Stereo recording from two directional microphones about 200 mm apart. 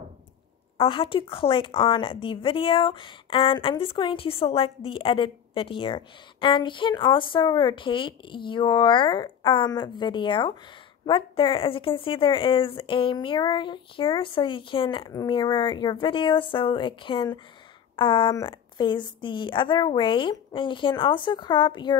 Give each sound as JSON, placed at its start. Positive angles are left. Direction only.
{"t": 0.7, "sound": "speech", "side_deg": 25}